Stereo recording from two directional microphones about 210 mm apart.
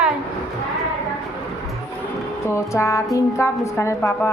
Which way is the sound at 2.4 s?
15° left (ahead or behind).